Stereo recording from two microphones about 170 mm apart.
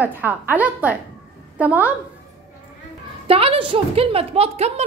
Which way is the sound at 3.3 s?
35° right (ahead or behind).